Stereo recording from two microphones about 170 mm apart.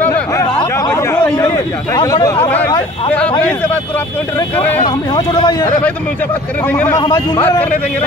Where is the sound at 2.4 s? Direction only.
10° left (ahead or behind).